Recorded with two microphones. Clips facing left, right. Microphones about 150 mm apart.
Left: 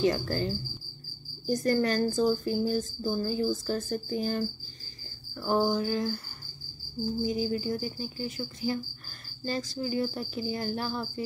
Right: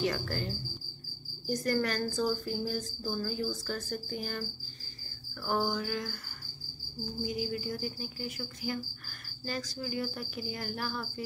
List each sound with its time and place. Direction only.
0.0 s a woman's voice: 30° left (ahead or behind)
7.2 s a woman's voice: 30° left (ahead or behind)